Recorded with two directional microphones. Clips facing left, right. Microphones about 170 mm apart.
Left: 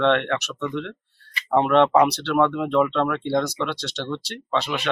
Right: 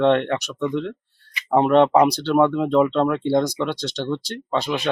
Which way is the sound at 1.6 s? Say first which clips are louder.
Right 2 dB; 35° right (ahead or behind).